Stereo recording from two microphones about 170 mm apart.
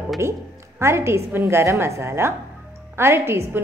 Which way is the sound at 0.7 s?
15° right (ahead or behind).